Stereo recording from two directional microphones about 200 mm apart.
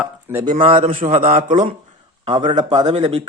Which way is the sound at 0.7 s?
40° right (ahead or behind).